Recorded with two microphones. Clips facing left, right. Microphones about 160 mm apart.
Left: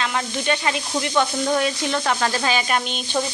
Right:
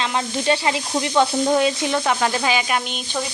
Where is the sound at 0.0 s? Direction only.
25° right (ahead or behind); by 3.2 s 5° right (ahead or behind).